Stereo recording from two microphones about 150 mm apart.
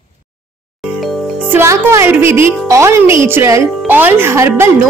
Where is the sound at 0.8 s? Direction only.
Centre (ahead or behind).